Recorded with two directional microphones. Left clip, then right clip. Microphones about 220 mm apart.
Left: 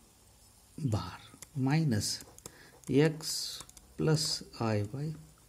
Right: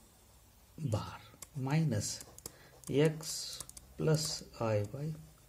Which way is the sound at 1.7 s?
35° left (ahead or behind).